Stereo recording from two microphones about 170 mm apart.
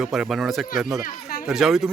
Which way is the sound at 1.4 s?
5° right (ahead or behind).